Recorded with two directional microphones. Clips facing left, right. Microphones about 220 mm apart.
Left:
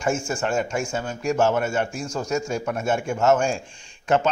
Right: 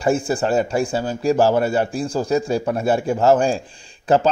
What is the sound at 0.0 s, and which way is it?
A man's voice, 35° right (ahead or behind).